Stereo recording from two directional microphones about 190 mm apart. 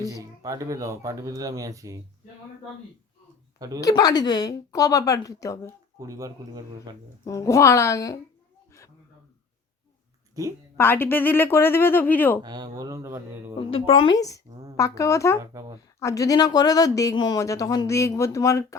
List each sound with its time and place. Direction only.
0.1 s speech: 20° right (ahead or behind)
3.8 s speech: 20° left (ahead or behind)
6.0 s speech: 15° right (ahead or behind)
7.3 s speech: 15° left (ahead or behind)
10.4 s speech: 20° right (ahead or behind)
10.8 s speech: 10° left (ahead or behind)
12.4 s speech: 20° right (ahead or behind)
13.6 s a woman's voice: 30° left (ahead or behind)
14.2 s speech: 15° left (ahead or behind)